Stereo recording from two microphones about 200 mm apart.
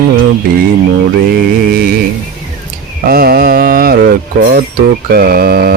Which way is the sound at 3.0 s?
50° right (ahead or behind).